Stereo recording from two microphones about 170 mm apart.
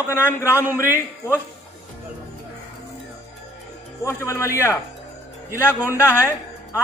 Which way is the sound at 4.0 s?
15° left (ahead or behind).